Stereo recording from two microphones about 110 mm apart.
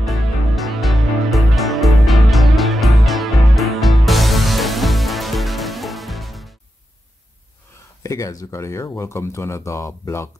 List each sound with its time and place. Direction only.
0.0 s music: centre (ahead or behind)
8.0 s speech: 30° left (ahead or behind)